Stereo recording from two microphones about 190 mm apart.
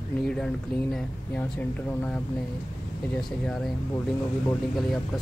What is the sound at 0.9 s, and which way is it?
Speech, 10° left (ahead or behind).